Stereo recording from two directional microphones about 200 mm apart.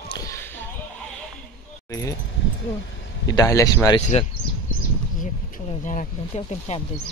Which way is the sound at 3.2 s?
15° left (ahead or behind).